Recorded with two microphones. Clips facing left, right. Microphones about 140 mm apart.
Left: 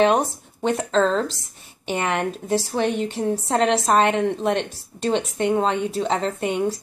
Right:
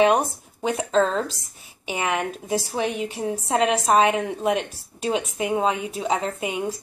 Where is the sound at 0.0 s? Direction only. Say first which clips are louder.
Even; 5° right (ahead or behind).